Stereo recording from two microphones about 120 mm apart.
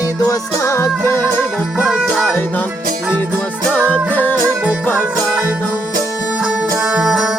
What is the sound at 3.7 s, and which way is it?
Music, 10° left (ahead or behind).